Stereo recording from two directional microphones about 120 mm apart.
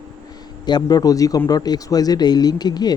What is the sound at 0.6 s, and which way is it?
Speech, 35° left (ahead or behind).